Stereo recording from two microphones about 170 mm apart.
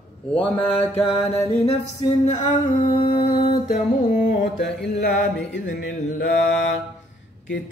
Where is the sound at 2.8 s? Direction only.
30° left (ahead or behind).